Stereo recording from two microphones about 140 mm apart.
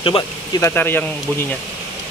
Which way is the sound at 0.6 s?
15° left (ahead or behind).